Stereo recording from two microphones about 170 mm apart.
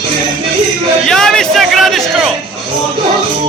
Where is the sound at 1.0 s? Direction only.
5° left (ahead or behind).